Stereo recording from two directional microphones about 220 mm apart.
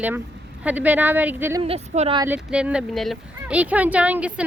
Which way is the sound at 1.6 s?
30° right (ahead or behind).